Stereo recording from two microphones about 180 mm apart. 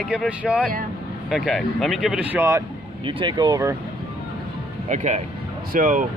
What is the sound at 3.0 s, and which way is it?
Speech, 25° right (ahead or behind).